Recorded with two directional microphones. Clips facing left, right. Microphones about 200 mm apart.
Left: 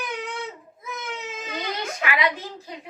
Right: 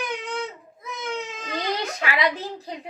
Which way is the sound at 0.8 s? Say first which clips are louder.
Right 3 dB; 5° left (ahead or behind).